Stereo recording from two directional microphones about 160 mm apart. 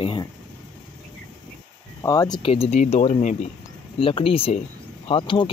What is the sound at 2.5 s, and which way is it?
Speech, 45° left (ahead or behind).